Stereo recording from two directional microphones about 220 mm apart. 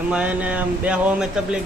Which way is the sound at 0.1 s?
5° right (ahead or behind).